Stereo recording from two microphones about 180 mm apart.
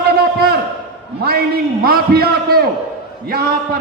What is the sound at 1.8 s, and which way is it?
A man's voice, 55° right (ahead or behind).